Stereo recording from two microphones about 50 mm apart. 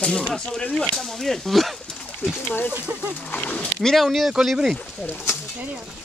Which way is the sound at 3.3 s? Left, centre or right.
Left.